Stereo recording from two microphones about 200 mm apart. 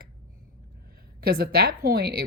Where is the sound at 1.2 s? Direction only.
50° right (ahead or behind).